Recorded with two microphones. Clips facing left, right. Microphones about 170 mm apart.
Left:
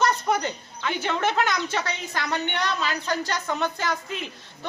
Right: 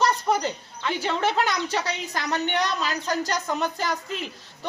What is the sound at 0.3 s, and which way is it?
Speech, 5° right (ahead or behind).